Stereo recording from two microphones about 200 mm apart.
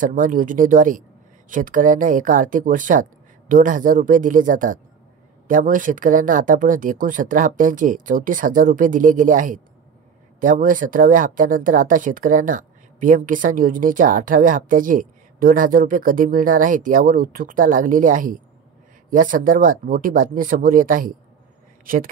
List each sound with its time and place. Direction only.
0.0 s speech: 40° right (ahead or behind)